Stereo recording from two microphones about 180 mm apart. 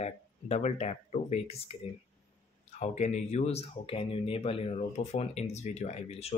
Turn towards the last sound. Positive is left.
turn(degrees=35)  # may be behind; listen again after turning